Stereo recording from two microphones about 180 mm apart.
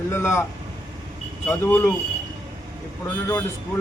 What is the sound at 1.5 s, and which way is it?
Speech, 10° left (ahead or behind).